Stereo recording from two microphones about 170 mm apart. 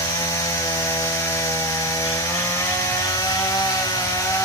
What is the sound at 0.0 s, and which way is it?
Chainsaw, 20° left (ahead or behind).